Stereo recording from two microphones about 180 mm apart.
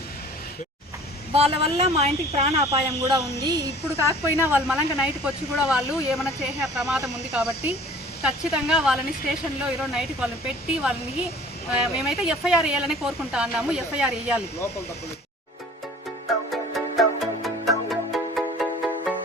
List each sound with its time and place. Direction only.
1.3 s speech: 35° right (ahead or behind)
3.4 s a woman's voice: 20° right (ahead or behind)
4.4 s speech: 10° right (ahead or behind)
16.5 s music: centre (ahead or behind)